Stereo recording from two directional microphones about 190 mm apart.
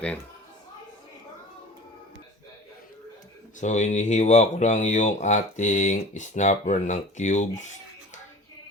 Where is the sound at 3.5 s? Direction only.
40° left (ahead or behind).